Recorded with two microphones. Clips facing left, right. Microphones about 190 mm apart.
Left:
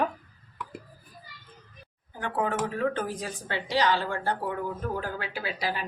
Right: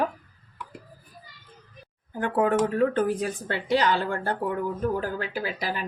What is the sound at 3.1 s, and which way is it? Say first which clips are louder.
Speech: right 6 dB; 55° right (ahead or behind).